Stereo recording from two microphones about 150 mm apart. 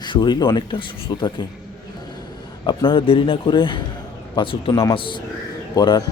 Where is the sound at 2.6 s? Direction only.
35° left (ahead or behind).